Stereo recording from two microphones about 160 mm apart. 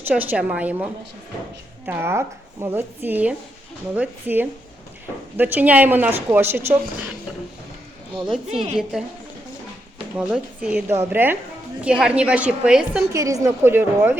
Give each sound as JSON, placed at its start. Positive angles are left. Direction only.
{"t": 0.0, "sound": "speech", "side_deg": -10}
{"t": 1.9, "sound": "speech", "side_deg": -15}
{"t": 8.7, "sound": "a woman's voice", "side_deg": -5}
{"t": 10.2, "sound": "speech", "side_deg": -5}
{"t": 13.1, "sound": "speech", "side_deg": -20}